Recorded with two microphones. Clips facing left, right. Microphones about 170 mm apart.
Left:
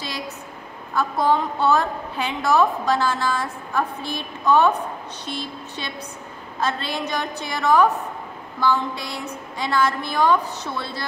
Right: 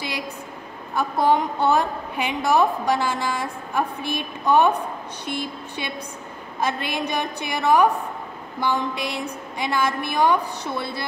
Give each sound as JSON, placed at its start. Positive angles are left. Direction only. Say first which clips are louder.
{"t": 0.9, "sound": "a woman's voice", "louder": "even", "side_deg": -15}